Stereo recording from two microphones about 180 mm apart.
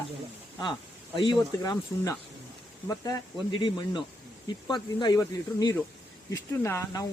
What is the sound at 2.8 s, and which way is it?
Speech, 20° left (ahead or behind).